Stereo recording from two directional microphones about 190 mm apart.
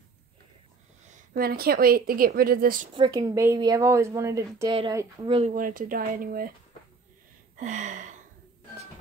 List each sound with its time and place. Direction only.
1.3 s speech: 50° right (ahead or behind)
2.9 s speech: 20° right (ahead or behind)
5.5 s speech: 45° right (ahead or behind)
7.5 s a sound: 40° right (ahead or behind)